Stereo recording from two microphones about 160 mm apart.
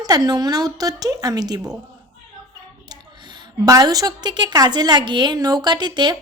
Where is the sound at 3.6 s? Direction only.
20° right (ahead or behind).